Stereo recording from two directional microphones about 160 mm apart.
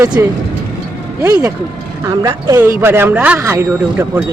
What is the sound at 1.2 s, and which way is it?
A man's voice, 25° right (ahead or behind).